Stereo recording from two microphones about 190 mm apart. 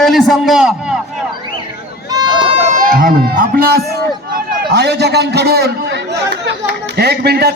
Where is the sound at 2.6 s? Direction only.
40° right (ahead or behind).